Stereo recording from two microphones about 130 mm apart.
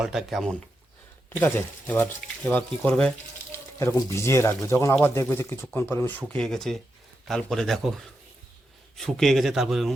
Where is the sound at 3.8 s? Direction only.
20° left (ahead or behind).